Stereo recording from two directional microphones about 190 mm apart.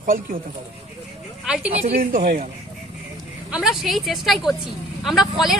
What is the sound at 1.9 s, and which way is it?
Speech, 45° right (ahead or behind).